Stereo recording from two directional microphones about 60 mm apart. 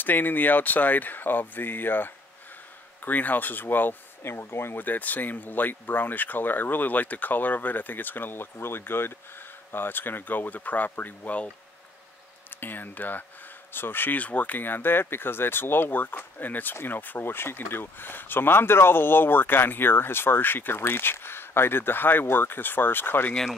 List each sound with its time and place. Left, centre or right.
0.0 s speech: left
12.4 s speech: left